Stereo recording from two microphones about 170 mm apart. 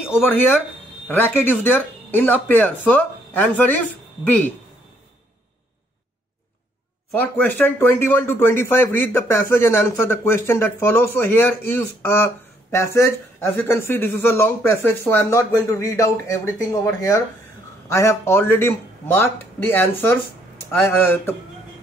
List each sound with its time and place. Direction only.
0.1 s speech: 10° left (ahead or behind)
7.1 s speech: 10° left (ahead or behind)